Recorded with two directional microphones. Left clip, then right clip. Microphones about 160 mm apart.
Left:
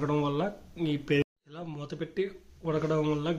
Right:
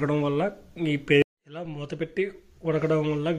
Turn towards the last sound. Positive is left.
turn(degrees=-15)  # may be behind; listen again after turning